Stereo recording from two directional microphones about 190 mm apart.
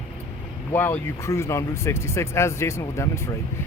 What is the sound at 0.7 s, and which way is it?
Speech, 10° left (ahead or behind).